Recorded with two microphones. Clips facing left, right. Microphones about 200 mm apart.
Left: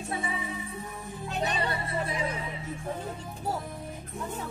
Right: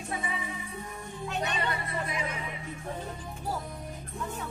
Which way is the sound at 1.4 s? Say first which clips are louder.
Left 3 dB; 30° left (ahead or behind).